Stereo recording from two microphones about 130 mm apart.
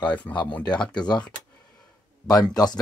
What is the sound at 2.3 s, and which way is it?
Speech, 30° left (ahead or behind).